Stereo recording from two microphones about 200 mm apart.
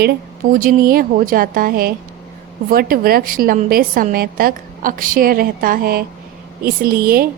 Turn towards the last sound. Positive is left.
turn(degrees=-45)  # may be behind; listen again after turning